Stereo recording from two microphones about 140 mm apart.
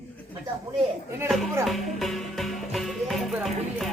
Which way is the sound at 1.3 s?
Centre (ahead or behind).